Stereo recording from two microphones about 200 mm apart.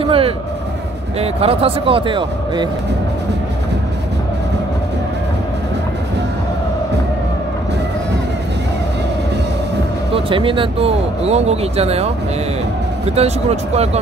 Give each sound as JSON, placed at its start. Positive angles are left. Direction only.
{"t": 0.0, "sound": "speech", "side_deg": -25}
{"t": 10.1, "sound": "speech", "side_deg": -25}
{"t": 13.1, "sound": "speech", "side_deg": -30}